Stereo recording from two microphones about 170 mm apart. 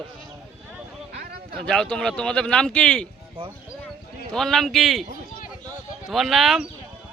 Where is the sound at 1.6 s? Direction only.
5° left (ahead or behind).